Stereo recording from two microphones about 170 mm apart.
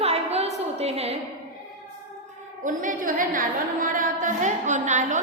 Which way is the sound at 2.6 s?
55° right (ahead or behind).